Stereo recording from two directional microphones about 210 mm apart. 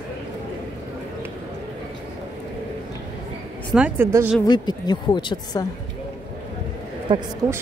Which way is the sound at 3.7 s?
10° right (ahead or behind).